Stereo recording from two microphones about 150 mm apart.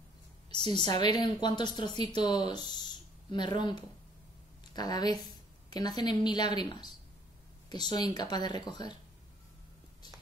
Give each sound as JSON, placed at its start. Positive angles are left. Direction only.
{"t": 0.6, "sound": "a woman's voice", "side_deg": -40}
{"t": 0.9, "sound": "speech", "side_deg": 25}